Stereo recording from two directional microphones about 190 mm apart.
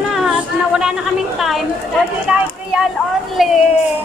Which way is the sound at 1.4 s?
Centre (ahead or behind).